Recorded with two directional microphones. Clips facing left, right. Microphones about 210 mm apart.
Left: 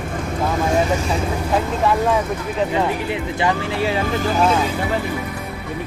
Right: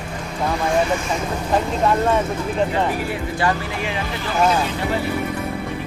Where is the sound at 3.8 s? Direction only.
45° left (ahead or behind).